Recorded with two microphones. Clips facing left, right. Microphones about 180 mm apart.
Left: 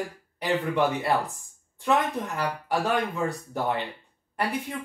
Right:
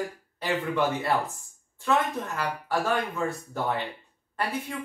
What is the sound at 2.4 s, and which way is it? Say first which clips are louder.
A man's voice: left 1 dB; 15° left (ahead or behind).